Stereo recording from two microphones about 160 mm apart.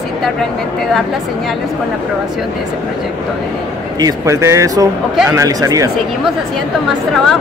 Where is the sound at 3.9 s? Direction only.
20° right (ahead or behind).